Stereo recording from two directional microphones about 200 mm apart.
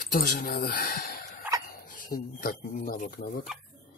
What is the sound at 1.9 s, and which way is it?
Speech, 45° left (ahead or behind).